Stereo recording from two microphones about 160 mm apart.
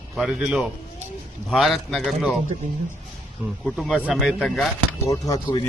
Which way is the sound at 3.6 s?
Centre (ahead or behind).